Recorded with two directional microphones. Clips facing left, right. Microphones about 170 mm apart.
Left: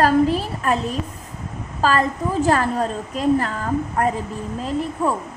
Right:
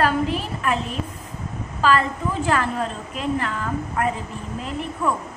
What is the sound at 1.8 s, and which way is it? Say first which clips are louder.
A woman's voice: left 1 dB; 40° left (ahead or behind).